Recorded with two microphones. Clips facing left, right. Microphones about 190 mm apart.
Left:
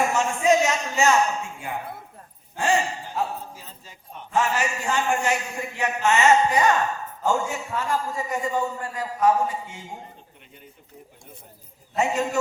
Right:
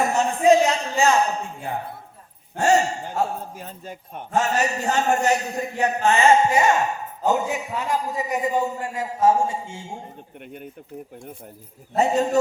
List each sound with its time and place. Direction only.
0.0 s a man's voice: 35° right (ahead or behind)
11.9 s speech: 35° right (ahead or behind)